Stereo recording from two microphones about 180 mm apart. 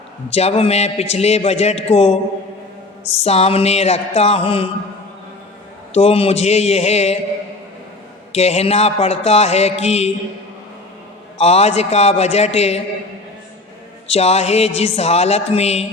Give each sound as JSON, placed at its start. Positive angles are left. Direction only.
{"t": 0.3, "sound": "music", "side_deg": 35}
{"t": 3.2, "sound": "music", "side_deg": 35}
{"t": 5.9, "sound": "music", "side_deg": 35}
{"t": 8.3, "sound": "music", "side_deg": 35}
{"t": 11.3, "sound": "music", "side_deg": 35}
{"t": 14.1, "sound": "music", "side_deg": 35}